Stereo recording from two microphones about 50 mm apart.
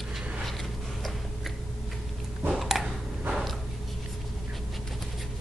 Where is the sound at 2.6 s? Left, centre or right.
Centre.